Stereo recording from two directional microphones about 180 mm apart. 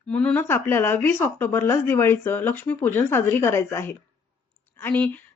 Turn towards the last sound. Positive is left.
turn(degrees=10)  # may be behind; listen again after turning